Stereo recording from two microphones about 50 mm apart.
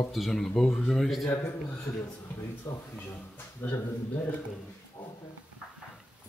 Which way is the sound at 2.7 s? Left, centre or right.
Left.